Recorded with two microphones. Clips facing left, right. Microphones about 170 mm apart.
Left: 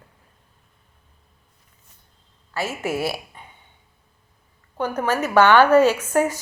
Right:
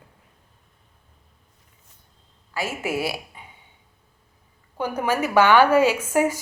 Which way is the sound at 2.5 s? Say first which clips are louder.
Left 1 dB; 10° right (ahead or behind).